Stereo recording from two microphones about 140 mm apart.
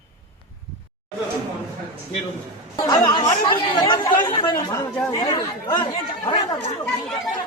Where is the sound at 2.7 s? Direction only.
25° left (ahead or behind).